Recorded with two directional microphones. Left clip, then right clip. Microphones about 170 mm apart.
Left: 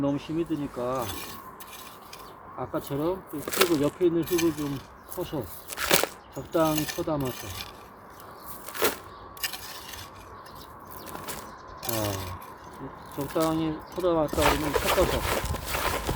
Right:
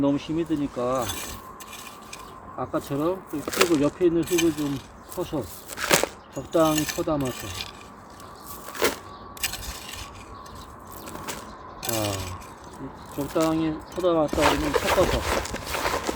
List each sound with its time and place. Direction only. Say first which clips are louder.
0.0 s speech: right 4 dB; 40° right (ahead or behind)
2.6 s speech: right 3 dB; 25° right (ahead or behind)
8.8 s a sound: right 2 dB; 5° right (ahead or behind)
9.4 s a sound: right 3 dB; 20° right (ahead or behind)
11.8 s speech: right 3 dB; 20° right (ahead or behind)
14.3 s speech: right 2 dB; 5° right (ahead or behind)
15.4 s walk: right 2 dB; 5° right (ahead or behind)